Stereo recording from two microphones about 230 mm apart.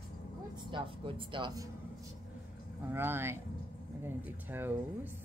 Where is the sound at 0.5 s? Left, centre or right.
Right.